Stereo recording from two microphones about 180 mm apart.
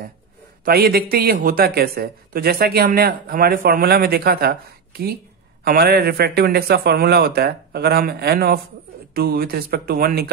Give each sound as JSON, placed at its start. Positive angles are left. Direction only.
{"t": 0.7, "sound": "speech", "side_deg": -60}